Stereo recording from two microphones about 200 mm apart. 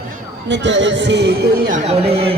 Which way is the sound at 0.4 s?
60° right (ahead or behind).